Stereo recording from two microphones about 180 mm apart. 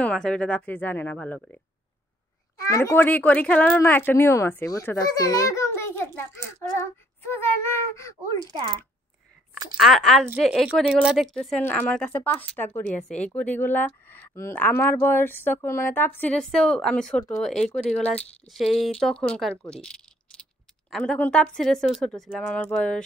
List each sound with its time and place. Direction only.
0.0 s speech: 5° left (ahead or behind)
2.6 s speech: 15° left (ahead or behind)
8.4 s speech: 25° right (ahead or behind)
9.8 s speech: centre (ahead or behind)
11.6 s speech: 10° left (ahead or behind)